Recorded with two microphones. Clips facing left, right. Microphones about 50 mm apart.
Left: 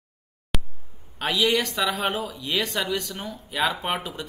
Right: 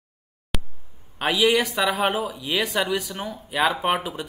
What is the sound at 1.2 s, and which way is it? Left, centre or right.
Speech, centre.